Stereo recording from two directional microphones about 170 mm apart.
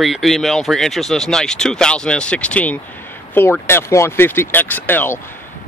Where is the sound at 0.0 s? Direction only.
Centre (ahead or behind).